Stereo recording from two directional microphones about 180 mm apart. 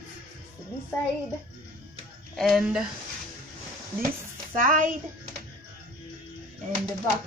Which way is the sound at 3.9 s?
50° right (ahead or behind).